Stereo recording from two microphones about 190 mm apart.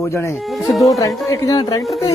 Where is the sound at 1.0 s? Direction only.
20° left (ahead or behind).